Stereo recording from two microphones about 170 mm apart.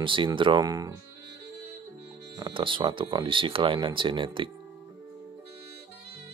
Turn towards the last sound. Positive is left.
turn(degrees=-30)  # may be behind; listen again after turning